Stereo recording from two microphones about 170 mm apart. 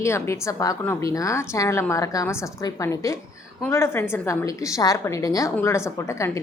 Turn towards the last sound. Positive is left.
turn(degrees=15)  # may be behind; listen again after turning